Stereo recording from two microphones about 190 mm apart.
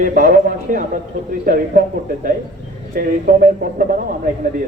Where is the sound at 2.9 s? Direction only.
45° right (ahead or behind).